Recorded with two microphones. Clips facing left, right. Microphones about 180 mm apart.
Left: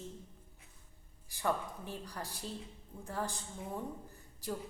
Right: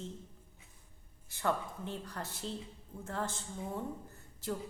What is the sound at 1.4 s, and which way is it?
A woman's voice, 15° left (ahead or behind).